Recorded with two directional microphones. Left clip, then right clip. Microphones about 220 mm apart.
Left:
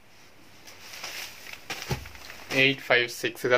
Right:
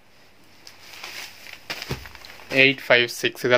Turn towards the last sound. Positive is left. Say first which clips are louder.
# right 5 dB
turn(degrees=-40)  # may be behind; listen again after turning